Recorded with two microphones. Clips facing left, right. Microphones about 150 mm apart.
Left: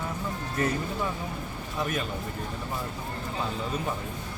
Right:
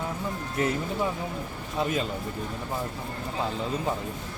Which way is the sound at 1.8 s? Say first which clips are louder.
Right 3 dB; 25° right (ahead or behind).